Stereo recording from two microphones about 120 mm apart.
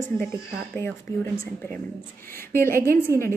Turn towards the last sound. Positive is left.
turn(degrees=-25)  # may be behind; listen again after turning